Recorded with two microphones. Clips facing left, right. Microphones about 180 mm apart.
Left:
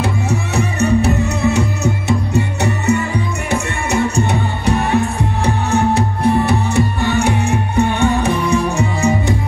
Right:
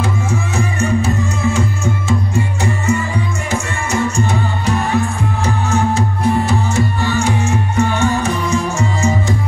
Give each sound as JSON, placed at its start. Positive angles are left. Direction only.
{"t": 0.0, "sound": "music", "side_deg": 65}